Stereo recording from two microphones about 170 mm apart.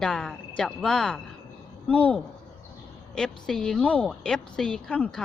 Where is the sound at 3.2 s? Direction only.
5° left (ahead or behind).